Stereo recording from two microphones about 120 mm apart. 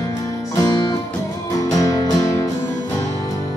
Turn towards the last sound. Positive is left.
turn(degrees=30)  # may be behind; listen again after turning